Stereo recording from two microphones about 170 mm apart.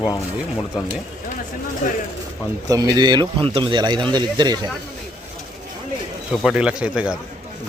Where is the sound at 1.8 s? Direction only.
50° left (ahead or behind).